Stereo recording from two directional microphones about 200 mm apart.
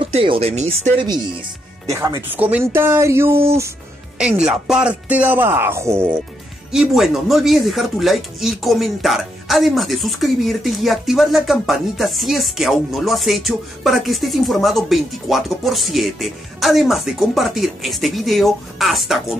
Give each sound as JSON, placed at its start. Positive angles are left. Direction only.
{"t": 0.0, "sound": "speech", "side_deg": -25}
{"t": 6.7, "sound": "speech", "side_deg": 0}